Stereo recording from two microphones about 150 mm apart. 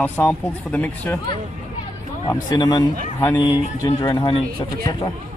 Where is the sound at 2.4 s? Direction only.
30° left (ahead or behind).